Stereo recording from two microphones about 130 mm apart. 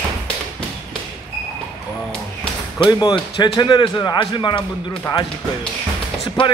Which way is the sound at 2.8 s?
30° left (ahead or behind).